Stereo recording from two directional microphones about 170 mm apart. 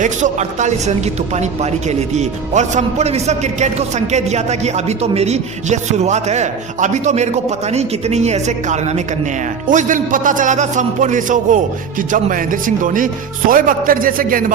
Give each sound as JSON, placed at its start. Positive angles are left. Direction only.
{"t": 0.0, "sound": "a man's voice", "side_deg": -45}